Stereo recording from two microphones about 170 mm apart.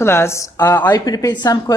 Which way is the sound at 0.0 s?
15° left (ahead or behind).